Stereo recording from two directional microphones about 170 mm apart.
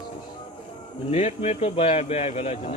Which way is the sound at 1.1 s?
40° left (ahead or behind).